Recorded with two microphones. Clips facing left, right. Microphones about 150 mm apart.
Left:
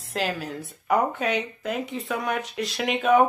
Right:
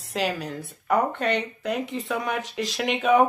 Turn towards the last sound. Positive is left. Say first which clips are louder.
# even
turn(degrees=0)  # may be behind; listen again after turning